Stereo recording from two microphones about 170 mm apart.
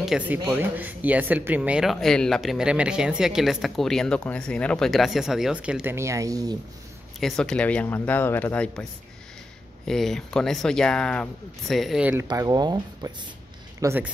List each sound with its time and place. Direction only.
0.0 s speech: centre (ahead or behind); by 6.6 s 20° right (ahead or behind)
7.2 s speech: centre (ahead or behind)
9.8 s speech: centre (ahead or behind)
12.3 s speech: 25° right (ahead or behind)